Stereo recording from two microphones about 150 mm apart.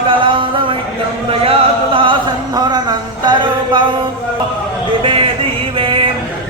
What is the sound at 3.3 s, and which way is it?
Music, 30° right (ahead or behind).